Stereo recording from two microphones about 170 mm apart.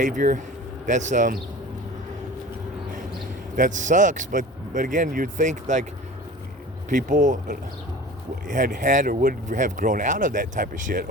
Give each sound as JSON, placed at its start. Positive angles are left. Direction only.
{"t": 0.0, "sound": "speech", "side_deg": -50}
{"t": 3.5, "sound": "speech", "side_deg": -50}
{"t": 6.9, "sound": "speech", "side_deg": -50}